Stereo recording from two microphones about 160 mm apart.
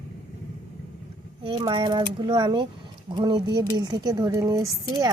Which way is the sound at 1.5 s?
30° right (ahead or behind).